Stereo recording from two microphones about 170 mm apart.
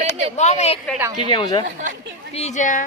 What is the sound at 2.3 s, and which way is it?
Speech, 40° left (ahead or behind).